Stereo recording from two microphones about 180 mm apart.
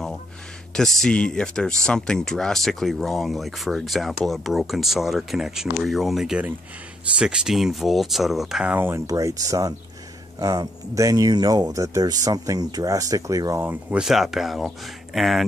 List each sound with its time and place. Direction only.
0.7 s speech: centre (ahead or behind)